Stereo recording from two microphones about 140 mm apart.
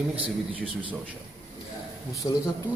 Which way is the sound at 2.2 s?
25° left (ahead or behind).